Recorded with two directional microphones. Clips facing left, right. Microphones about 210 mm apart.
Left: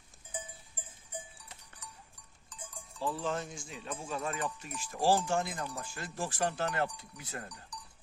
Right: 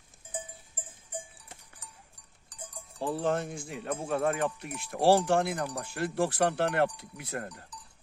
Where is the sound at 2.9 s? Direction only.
50° right (ahead or behind).